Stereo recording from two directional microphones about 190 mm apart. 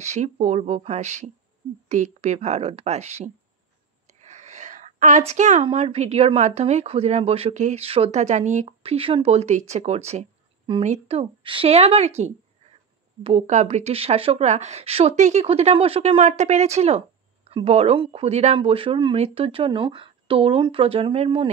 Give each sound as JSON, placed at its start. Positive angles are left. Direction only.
{"t": 0.0, "sound": "a woman's voice", "side_deg": -35}